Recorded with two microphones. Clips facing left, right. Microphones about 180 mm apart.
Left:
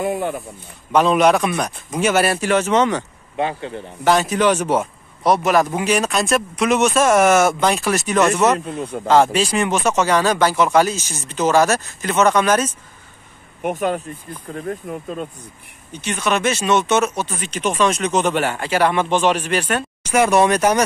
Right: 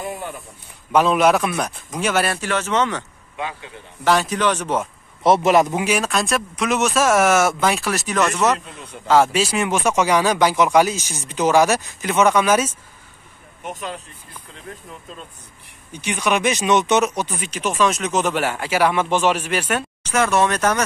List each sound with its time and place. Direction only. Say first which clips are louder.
0.0 s speech: left 8 dB; 50° left (ahead or behind)
0.9 s speech: left 1 dB; 5° right (ahead or behind)
2.3 s speech: left 5 dB; 15° left (ahead or behind)
4.0 s speech: left 2 dB; centre (ahead or behind)
5.2 s a man's voice: right 1 dB; 25° right (ahead or behind)
5.7 s speech: left 2 dB; 5° right (ahead or behind)
8.5 s a man's voice: left 12 dB; 55° left (ahead or behind)
9.0 s speech: left 1 dB; 5° right (ahead or behind)
13.6 s speech: left 10 dB; 55° left (ahead or behind)
15.9 s speech: even; 15° right (ahead or behind)
20.0 s speech: left 4 dB; 15° left (ahead or behind)